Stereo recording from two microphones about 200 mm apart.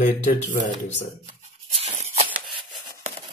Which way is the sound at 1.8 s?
35° right (ahead or behind).